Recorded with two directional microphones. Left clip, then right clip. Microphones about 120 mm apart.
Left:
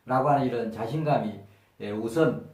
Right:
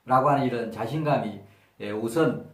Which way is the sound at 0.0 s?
25° right (ahead or behind).